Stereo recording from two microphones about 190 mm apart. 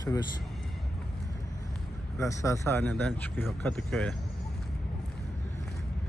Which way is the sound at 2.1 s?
15° left (ahead or behind).